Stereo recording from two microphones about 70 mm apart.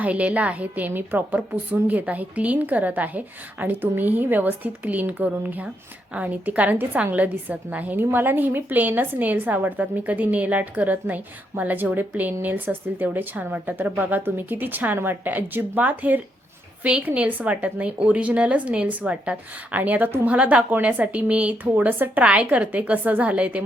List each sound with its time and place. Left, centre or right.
0.0 s a woman's voice: centre